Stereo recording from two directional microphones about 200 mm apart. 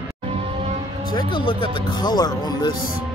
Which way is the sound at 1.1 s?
25° left (ahead or behind).